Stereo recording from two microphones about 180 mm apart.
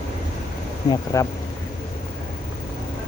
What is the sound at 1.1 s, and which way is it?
Speech, 20° left (ahead or behind).